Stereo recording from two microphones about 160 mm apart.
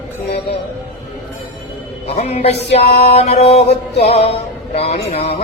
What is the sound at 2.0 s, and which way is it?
Music, 40° left (ahead or behind).